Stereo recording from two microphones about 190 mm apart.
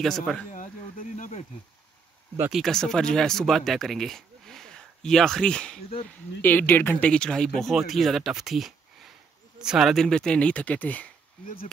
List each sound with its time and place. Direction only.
0.0 s speech: centre (ahead or behind)
0.5 s a sound: 45° left (ahead or behind)
2.5 s speech: centre (ahead or behind)